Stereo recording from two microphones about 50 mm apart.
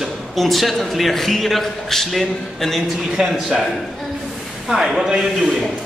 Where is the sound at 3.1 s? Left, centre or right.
Centre.